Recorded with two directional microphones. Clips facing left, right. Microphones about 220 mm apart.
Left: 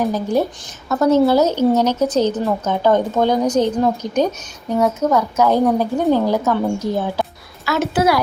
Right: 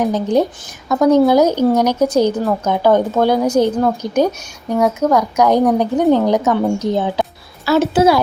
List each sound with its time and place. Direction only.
0.0 s a woman's voice: 20° right (ahead or behind)
7.6 s a woman's voice: 30° right (ahead or behind)